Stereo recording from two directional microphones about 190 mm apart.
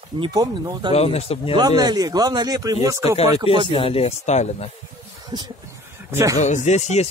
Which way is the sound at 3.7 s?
30° left (ahead or behind).